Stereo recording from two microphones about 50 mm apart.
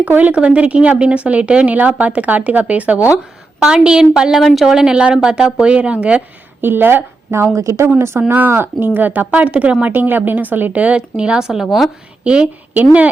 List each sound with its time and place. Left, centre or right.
0.0 s speech: right
3.6 s a woman's voice: centre
4.3 s a woman's voice: centre
4.7 s a woman's voice: centre
5.7 s speech: right
6.6 s speech: right
7.5 s speech: right
7.9 s speech: right
8.3 s a woman's voice: right
9.8 s a woman's voice: right; by 11.6 s centre
11.6 s a woman's voice: centre
12.7 s a woman's voice: right